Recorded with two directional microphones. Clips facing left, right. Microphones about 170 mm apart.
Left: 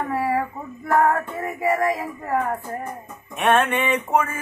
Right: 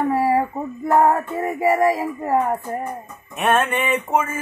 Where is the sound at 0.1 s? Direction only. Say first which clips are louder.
Right 1 dB; 30° right (ahead or behind).